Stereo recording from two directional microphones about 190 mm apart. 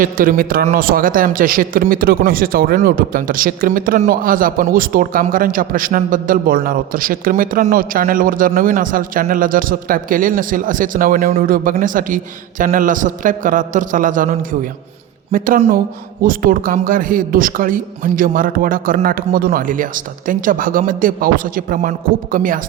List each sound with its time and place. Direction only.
0.0 s a man's voice: 45° right (ahead or behind)